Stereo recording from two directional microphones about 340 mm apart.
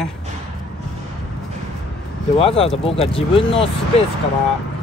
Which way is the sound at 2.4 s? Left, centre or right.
Centre.